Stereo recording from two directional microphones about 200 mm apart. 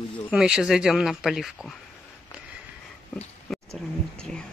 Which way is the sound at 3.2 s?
Centre (ahead or behind).